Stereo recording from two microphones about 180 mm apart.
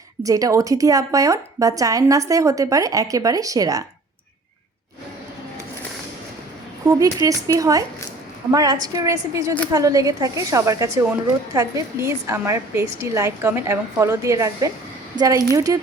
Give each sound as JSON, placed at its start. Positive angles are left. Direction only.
{"t": 0.2, "sound": "a woman's voice", "side_deg": -20}
{"t": 6.8, "sound": "a woman's voice", "side_deg": -20}